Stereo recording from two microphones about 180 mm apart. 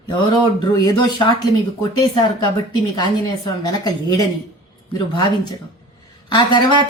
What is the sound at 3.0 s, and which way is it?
A woman's voice, 25° left (ahead or behind).